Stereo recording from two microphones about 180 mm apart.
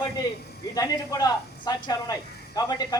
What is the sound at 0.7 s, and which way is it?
Speech, 20° left (ahead or behind).